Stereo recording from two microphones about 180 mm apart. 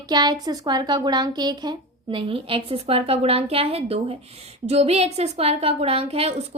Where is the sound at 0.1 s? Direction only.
25° right (ahead or behind).